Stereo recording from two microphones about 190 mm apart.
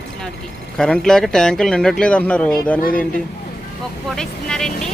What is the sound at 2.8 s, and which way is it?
Speech, 50° left (ahead or behind).